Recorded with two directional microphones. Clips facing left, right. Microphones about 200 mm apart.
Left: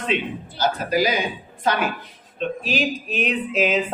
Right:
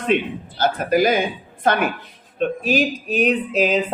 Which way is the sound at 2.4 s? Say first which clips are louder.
Right 5 dB; 50° right (ahead or behind).